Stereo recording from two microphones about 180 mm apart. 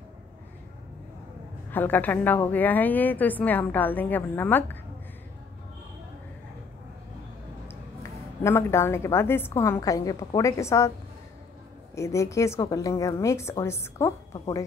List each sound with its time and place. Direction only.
1.7 s a woman's voice: 10° left (ahead or behind)
7.6 s a woman's voice: 15° left (ahead or behind)
11.9 s a woman's voice: 15° left (ahead or behind)